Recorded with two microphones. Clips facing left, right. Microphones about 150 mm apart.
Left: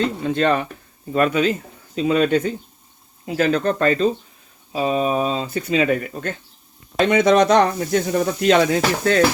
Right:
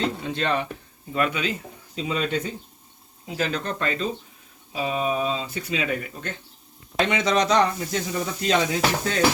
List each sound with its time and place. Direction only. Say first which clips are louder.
0.3 s speech: left 6 dB; 50° left (ahead or behind)
2.0 s speech: left 9 dB; 55° left (ahead or behind)